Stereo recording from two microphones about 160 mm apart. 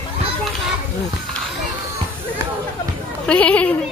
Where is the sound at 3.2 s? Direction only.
10° left (ahead or behind).